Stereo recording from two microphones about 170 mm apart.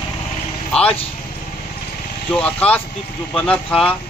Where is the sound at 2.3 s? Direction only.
5° left (ahead or behind).